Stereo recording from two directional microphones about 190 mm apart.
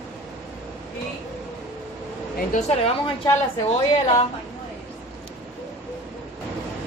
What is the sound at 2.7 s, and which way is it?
Speech, 35° left (ahead or behind).